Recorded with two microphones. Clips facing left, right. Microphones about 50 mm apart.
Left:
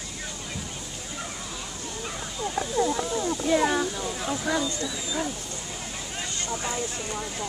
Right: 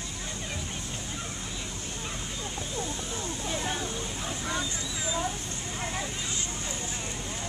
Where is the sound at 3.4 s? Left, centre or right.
Left.